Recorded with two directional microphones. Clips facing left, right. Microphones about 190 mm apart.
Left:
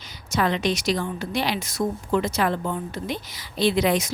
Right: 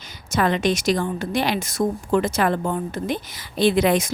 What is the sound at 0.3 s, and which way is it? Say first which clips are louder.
A woman's voice: right 3 dB; 50° right (ahead or behind).